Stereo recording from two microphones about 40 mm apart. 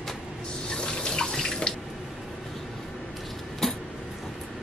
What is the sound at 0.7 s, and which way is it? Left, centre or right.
Water tap, centre.